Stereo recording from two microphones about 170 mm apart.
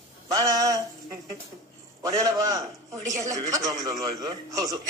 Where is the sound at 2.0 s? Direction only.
20° right (ahead or behind).